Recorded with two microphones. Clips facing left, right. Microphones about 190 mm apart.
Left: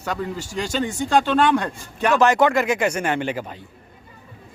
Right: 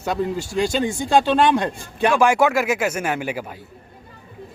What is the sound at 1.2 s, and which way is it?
Speech, 30° right (ahead or behind).